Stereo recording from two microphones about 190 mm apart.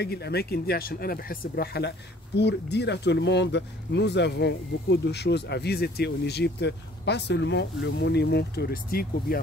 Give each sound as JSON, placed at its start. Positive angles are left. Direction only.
{"t": 0.0, "sound": "speech", "side_deg": 60}